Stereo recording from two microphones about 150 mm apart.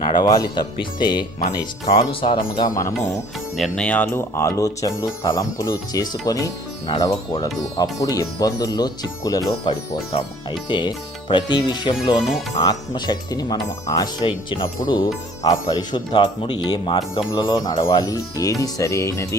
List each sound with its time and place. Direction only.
0.0 s speech: 30° left (ahead or behind)
3.5 s speech: 5° left (ahead or behind); by 19.4 s 20° left (ahead or behind)